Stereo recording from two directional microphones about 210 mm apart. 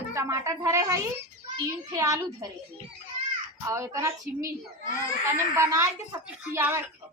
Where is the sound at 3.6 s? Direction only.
15° right (ahead or behind).